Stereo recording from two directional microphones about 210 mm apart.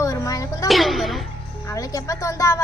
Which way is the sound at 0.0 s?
15° left (ahead or behind).